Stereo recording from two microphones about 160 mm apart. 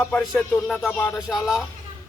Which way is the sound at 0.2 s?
10° left (ahead or behind).